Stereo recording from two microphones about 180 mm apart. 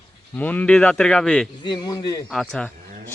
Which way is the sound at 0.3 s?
10° left (ahead or behind).